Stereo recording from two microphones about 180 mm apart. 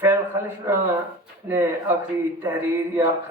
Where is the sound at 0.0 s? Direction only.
10° right (ahead or behind).